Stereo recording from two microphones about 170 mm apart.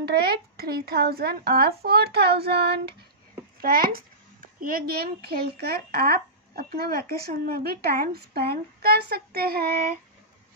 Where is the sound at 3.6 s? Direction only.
60° right (ahead or behind).